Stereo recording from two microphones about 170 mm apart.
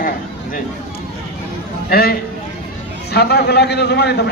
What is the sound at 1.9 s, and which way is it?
A man's voice, 65° left (ahead or behind).